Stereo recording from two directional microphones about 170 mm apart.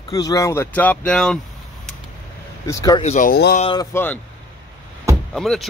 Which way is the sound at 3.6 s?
30° left (ahead or behind).